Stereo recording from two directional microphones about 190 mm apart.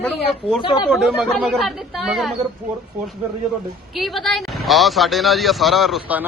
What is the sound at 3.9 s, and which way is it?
Speech, centre (ahead or behind).